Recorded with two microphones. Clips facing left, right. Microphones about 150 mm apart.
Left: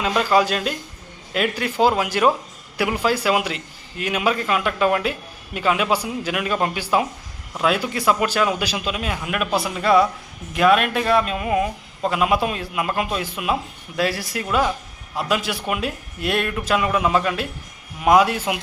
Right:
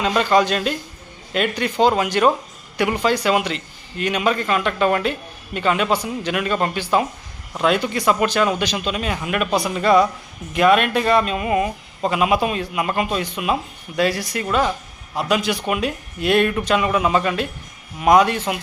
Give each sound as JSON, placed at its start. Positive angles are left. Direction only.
{"t": 0.0, "sound": "a man's voice", "side_deg": 5}